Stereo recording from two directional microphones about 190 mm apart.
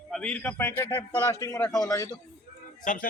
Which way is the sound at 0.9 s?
25° left (ahead or behind).